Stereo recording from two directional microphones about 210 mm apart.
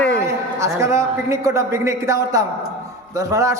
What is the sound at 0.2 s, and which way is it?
A man's voice, 15° right (ahead or behind).